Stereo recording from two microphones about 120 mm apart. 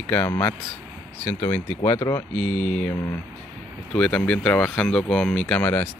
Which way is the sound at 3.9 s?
10° left (ahead or behind).